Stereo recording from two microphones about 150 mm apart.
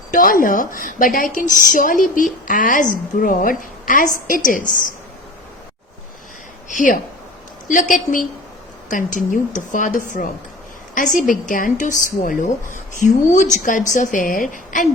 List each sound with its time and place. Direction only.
0.1 s a woman's voice: 65° left (ahead or behind)
6.7 s a woman's voice: 60° left (ahead or behind)